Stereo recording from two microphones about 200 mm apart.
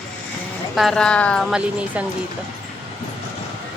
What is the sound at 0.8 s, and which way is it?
Speech, 5° left (ahead or behind).